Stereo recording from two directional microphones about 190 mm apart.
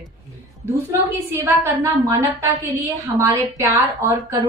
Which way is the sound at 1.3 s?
10° right (ahead or behind).